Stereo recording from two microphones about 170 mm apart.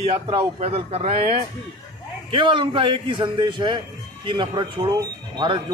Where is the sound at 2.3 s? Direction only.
30° right (ahead or behind).